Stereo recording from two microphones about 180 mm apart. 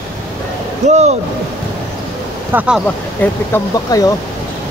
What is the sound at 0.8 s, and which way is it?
Speech, 40° right (ahead or behind).